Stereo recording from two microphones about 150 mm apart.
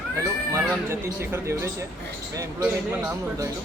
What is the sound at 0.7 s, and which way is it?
Speech, 15° right (ahead or behind).